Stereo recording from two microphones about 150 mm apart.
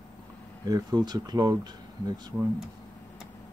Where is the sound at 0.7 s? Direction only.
25° right (ahead or behind).